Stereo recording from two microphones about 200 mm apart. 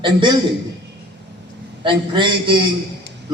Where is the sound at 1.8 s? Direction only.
25° right (ahead or behind).